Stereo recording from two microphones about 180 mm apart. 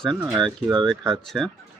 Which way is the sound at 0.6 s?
Centre (ahead or behind).